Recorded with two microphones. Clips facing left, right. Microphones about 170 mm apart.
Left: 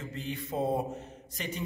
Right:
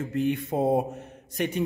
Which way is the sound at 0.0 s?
60° right (ahead or behind).